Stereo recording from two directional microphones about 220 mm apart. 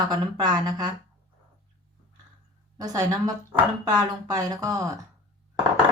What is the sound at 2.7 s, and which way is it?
A woman's voice, 15° right (ahead or behind).